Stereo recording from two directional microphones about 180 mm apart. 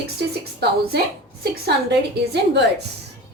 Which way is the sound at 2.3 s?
70° right (ahead or behind).